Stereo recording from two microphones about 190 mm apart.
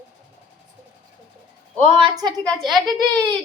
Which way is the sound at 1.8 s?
25° right (ahead or behind).